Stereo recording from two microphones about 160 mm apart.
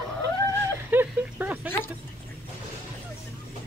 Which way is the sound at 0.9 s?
10° right (ahead or behind).